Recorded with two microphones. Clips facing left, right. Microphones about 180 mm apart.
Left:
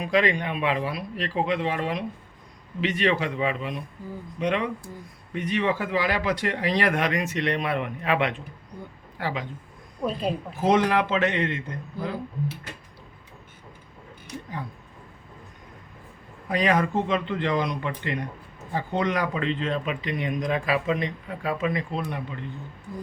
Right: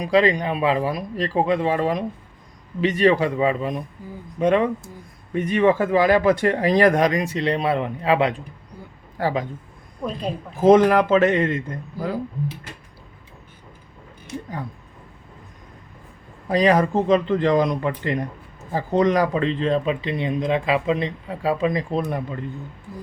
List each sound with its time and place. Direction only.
0.0 s speech: 35° right (ahead or behind)
9.1 s speech: 45° right (ahead or behind)
10.0 s a woman's voice: 5° left (ahead or behind)
10.6 s speech: 45° right (ahead or behind)
16.5 s speech: 35° right (ahead or behind)